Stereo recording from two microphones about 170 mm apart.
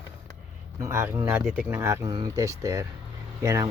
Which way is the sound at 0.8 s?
15° right (ahead or behind).